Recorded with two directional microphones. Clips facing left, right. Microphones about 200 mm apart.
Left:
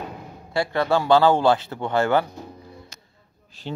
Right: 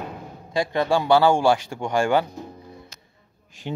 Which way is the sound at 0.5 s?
15° right (ahead or behind).